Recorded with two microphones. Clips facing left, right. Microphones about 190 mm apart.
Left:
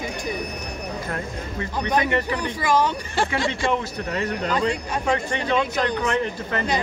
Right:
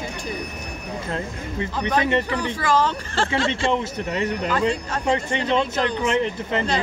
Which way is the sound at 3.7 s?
20° right (ahead or behind).